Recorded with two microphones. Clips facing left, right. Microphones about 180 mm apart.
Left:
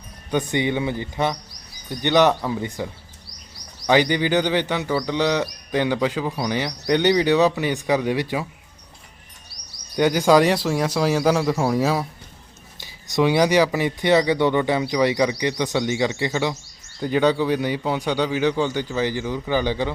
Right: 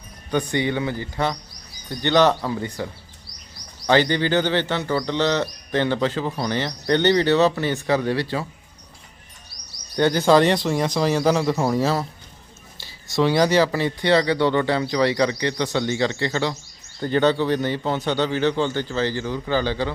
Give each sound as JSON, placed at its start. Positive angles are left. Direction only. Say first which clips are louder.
{"t": 0.3, "sound": "a man's voice", "louder": "even", "side_deg": 20}
{"t": 9.9, "sound": "speech", "louder": "even", "side_deg": 10}